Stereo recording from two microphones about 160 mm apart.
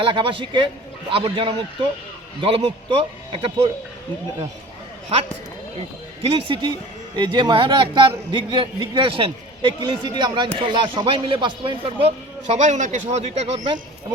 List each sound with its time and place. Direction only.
0.0 s a man's voice: 30° right (ahead or behind)
6.2 s a man's voice: 30° right (ahead or behind)
12.0 s a man's voice: 45° right (ahead or behind)